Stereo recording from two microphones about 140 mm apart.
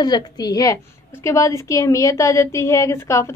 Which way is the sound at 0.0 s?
30° left (ahead or behind).